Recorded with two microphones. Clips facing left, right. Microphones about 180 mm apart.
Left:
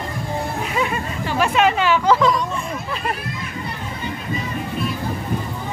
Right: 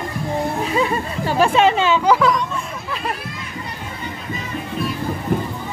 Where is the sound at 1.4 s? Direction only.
30° right (ahead or behind).